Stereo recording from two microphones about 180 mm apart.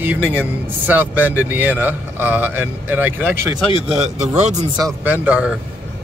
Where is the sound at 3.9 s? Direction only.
40° right (ahead or behind).